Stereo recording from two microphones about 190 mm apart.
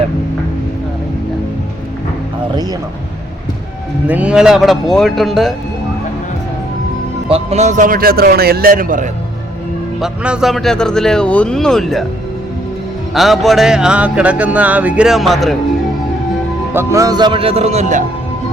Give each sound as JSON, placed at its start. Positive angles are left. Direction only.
{"t": 4.0, "sound": "music", "side_deg": -5}
{"t": 7.3, "sound": "a man's voice", "side_deg": -35}
{"t": 10.0, "sound": "music", "side_deg": -5}
{"t": 13.1, "sound": "music", "side_deg": 0}
{"t": 16.7, "sound": "speech", "side_deg": -15}